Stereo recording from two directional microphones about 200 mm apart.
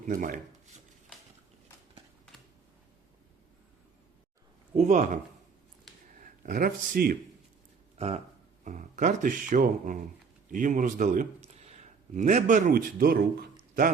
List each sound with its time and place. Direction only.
0.0 s speech: 40° right (ahead or behind)
4.7 s speech: 35° right (ahead or behind)
7.9 s a man's voice: 30° right (ahead or behind); by 13.5 s 50° right (ahead or behind)